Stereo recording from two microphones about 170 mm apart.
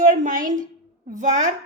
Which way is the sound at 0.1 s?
50° right (ahead or behind).